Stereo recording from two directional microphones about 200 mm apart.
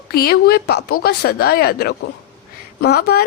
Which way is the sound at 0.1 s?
50° left (ahead or behind).